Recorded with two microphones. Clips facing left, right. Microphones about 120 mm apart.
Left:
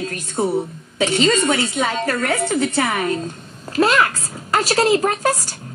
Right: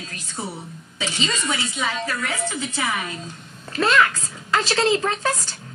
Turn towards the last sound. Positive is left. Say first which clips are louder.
# left 4 dB
turn(degrees=40)  # may be behind; listen again after turning